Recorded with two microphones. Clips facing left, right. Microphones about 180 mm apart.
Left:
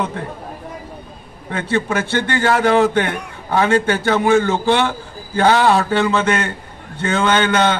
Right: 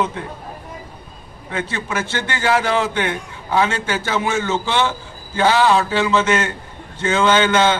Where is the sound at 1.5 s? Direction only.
55° left (ahead or behind).